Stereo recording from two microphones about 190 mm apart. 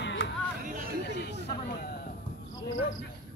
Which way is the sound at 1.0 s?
60° left (ahead or behind).